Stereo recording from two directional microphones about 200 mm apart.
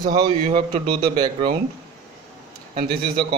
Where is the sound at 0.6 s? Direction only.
45° right (ahead or behind).